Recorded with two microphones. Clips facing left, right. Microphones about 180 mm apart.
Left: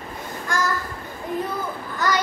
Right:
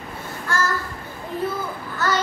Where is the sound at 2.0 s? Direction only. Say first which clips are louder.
Even; 15° left (ahead or behind).